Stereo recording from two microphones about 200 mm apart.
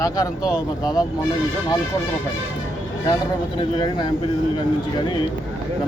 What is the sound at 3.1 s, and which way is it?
Speech, 20° left (ahead or behind).